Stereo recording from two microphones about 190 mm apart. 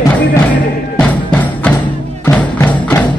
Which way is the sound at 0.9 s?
10° left (ahead or behind).